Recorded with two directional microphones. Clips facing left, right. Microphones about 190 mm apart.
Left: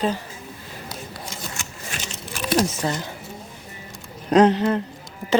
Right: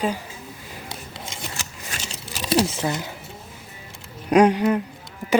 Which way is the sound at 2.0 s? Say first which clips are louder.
Even; 30° right (ahead or behind).